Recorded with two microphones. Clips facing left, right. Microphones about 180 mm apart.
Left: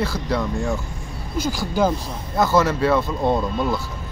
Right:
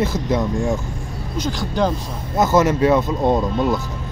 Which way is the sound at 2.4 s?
20° right (ahead or behind).